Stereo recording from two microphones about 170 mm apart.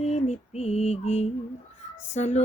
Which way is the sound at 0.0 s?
40° left (ahead or behind).